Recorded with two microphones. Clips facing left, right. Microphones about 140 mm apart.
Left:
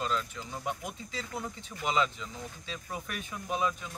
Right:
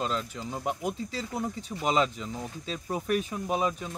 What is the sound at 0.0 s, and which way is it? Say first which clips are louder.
Speech: right 2 dB; 35° right (ahead or behind).